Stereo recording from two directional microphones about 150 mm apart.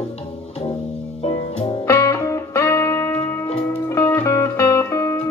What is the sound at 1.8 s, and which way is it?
Music, 20° left (ahead or behind).